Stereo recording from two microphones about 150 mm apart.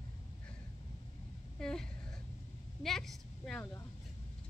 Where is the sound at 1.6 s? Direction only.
5° left (ahead or behind).